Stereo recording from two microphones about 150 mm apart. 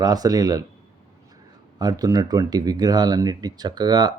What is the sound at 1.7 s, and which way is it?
Speech, 25° right (ahead or behind).